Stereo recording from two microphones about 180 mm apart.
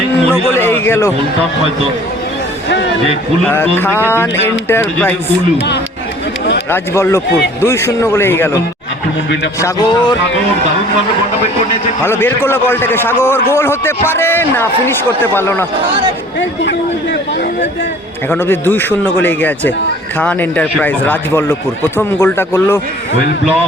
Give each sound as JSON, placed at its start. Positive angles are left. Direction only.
{"t": 0.5, "sound": "speech", "side_deg": 10}
{"t": 3.5, "sound": "speech", "side_deg": 10}
{"t": 6.7, "sound": "speech", "side_deg": 15}
{"t": 9.6, "sound": "speech", "side_deg": 20}
{"t": 12.0, "sound": "speech", "side_deg": 10}
{"t": 18.3, "sound": "speech", "side_deg": 15}